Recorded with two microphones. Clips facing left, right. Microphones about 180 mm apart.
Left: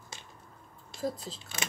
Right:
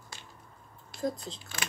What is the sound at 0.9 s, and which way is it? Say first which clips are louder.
Speech: right 1 dB; 5° left (ahead or behind).